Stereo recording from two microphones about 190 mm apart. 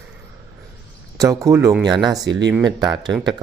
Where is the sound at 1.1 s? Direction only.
15° right (ahead or behind).